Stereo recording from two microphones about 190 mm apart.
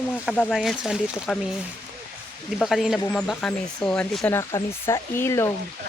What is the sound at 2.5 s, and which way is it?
Speech, centre (ahead or behind).